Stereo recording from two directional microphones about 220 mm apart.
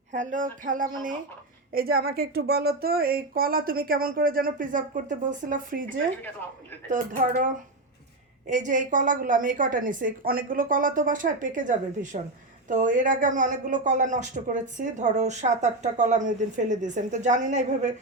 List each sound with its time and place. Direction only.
0.1 s speech: 35° right (ahead or behind)
8.4 s speech: 35° right (ahead or behind)